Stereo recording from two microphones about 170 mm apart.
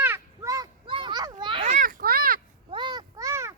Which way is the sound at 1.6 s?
50° right (ahead or behind).